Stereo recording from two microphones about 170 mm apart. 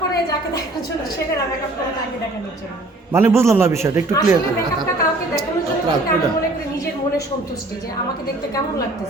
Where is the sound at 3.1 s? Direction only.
15° right (ahead or behind).